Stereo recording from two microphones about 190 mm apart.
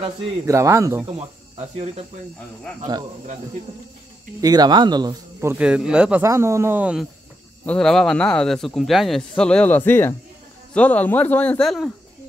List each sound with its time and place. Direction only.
0.5 s speech: 15° right (ahead or behind)
1.6 s speech: 30° right (ahead or behind)
4.4 s speech: 20° right (ahead or behind); by 6.2 s 5° right (ahead or behind)
6.2 s a man's voice: 15° right (ahead or behind); by 11.9 s centre (ahead or behind)